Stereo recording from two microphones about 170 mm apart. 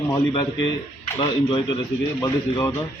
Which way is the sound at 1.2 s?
30° left (ahead or behind).